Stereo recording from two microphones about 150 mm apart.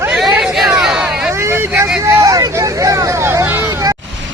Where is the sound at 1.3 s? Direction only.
20° right (ahead or behind).